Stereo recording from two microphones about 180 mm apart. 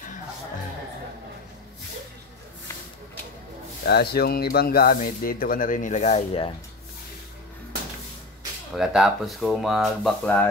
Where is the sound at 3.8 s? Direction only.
65° left (ahead or behind); by 6.5 s 35° left (ahead or behind).